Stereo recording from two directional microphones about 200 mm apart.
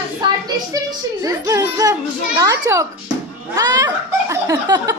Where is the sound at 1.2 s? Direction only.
15° right (ahead or behind).